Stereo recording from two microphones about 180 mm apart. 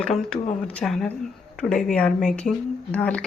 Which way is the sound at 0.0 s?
5° left (ahead or behind).